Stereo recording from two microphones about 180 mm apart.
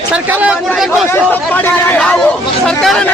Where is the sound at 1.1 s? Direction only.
10° left (ahead or behind).